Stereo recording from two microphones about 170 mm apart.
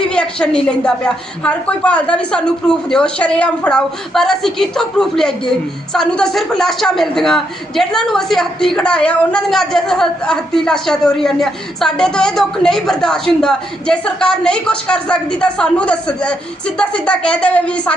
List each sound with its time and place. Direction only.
0.0 s a woman's voice: 5° left (ahead or behind)